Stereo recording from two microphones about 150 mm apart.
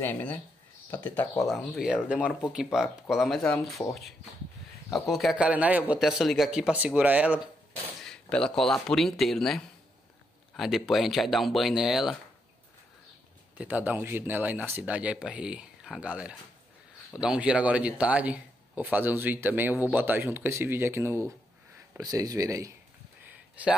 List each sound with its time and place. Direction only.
0.0 s speech: 10° left (ahead or behind)
1.4 s speech: centre (ahead or behind)
2.1 s speech: 10° left (ahead or behind)
2.5 s speech: 5° right (ahead or behind)
4.9 s speech: centre (ahead or behind)
8.0 s speech: 5° left (ahead or behind)
13.6 s a man's voice: 10° right (ahead or behind)